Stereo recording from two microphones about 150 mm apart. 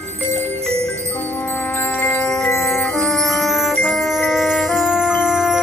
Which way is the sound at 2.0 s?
10° left (ahead or behind).